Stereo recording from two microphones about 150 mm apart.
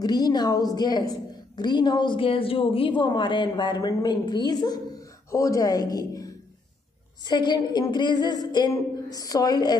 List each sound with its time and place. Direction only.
0.0 s a woman's voice: 25° left (ahead or behind)